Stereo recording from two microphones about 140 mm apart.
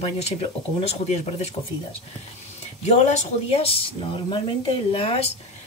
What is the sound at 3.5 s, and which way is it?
Speech, 45° left (ahead or behind).